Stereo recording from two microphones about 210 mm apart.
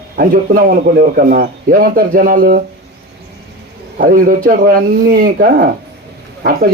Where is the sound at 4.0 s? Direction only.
40° right (ahead or behind).